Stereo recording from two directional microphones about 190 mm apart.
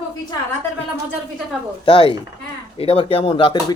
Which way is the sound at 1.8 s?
25° left (ahead or behind).